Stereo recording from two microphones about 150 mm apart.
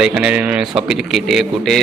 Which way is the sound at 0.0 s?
5° right (ahead or behind).